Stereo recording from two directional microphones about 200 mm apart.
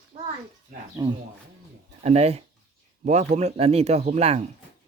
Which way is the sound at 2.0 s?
30° right (ahead or behind).